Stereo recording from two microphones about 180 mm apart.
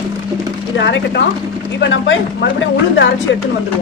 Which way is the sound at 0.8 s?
75° left (ahead or behind).